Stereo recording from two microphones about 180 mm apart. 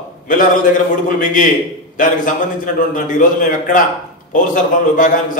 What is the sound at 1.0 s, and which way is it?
Speech, 45° left (ahead or behind).